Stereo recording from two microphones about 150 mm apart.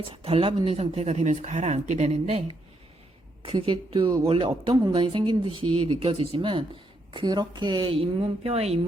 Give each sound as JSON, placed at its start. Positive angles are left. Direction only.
{"t": 0.1, "sound": "speech", "side_deg": -40}